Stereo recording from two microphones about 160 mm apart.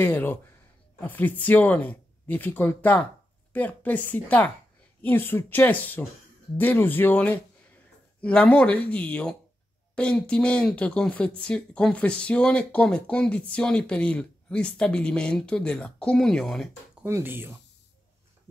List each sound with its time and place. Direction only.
0.0 s speech: 10° left (ahead or behind)
17.0 s speech: 15° right (ahead or behind)